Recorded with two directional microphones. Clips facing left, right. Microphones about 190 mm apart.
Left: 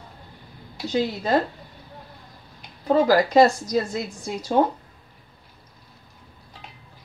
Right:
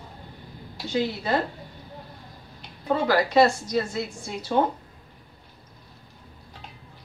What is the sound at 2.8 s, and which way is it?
Speech, 35° left (ahead or behind).